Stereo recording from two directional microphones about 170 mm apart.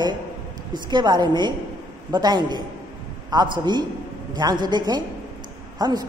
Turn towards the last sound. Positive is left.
turn(degrees=-25)  # may be behind; listen again after turning